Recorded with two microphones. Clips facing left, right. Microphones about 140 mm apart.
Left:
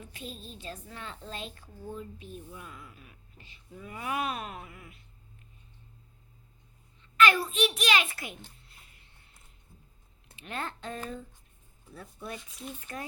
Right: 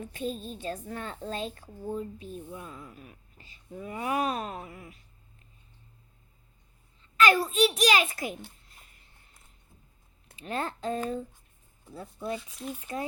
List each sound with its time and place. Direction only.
0.0 s a woman's voice: 45° right (ahead or behind)
7.0 s a sound: 35° right (ahead or behind)
10.4 s speech: 35° right (ahead or behind)